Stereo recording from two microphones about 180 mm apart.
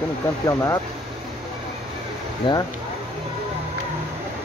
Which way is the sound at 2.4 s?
25° left (ahead or behind).